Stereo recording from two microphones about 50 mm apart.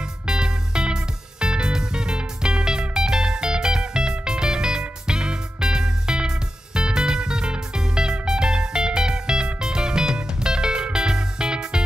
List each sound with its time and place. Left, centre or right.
0.3 s music: centre